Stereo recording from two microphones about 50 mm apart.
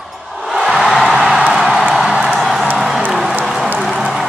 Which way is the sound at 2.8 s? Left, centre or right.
Centre.